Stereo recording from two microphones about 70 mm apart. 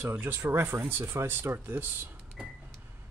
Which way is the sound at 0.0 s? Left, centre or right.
Right.